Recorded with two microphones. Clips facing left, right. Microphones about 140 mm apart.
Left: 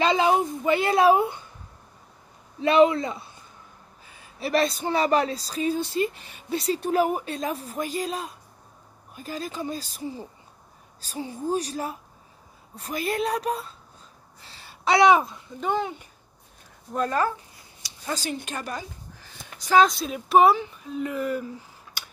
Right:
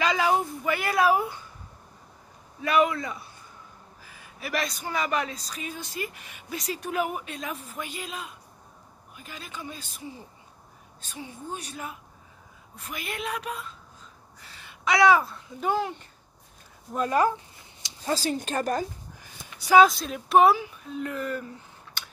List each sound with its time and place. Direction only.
0.0 s a sound: 25° left (ahead or behind)
2.6 s speech: 25° left (ahead or behind)
14.4 s a sound: 30° left (ahead or behind)
15.4 s speech: 5° right (ahead or behind)
17.8 s a woman's voice: 35° right (ahead or behind)
19.6 s speech: 10° right (ahead or behind); by 22.0 s 10° left (ahead or behind)